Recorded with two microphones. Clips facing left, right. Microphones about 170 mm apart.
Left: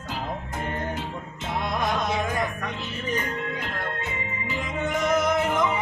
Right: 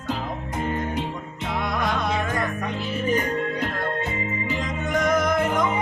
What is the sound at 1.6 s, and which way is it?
Music, 20° left (ahead or behind).